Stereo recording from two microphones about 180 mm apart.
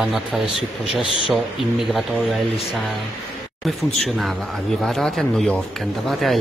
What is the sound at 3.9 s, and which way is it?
Speech, centre (ahead or behind).